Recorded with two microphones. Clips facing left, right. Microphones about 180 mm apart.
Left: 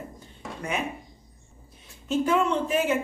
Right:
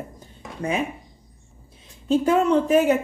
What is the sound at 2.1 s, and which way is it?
Speech, 40° right (ahead or behind).